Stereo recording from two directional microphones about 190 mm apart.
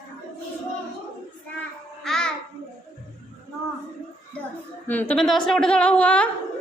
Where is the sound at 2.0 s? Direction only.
5° left (ahead or behind).